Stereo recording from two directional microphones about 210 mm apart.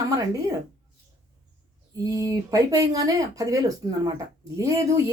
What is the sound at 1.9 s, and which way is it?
Speech, 15° right (ahead or behind).